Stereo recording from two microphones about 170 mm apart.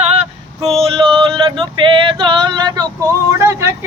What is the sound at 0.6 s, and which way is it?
Male singing, 35° right (ahead or behind).